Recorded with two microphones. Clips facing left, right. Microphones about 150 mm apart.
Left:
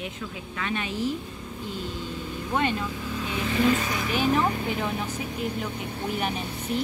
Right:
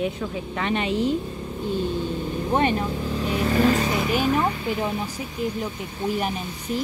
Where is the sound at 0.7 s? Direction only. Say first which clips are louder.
Right 5 dB; 65° right (ahead or behind).